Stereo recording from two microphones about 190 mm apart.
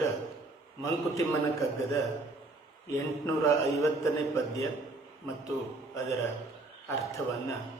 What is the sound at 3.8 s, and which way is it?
Mantra, 15° left (ahead or behind).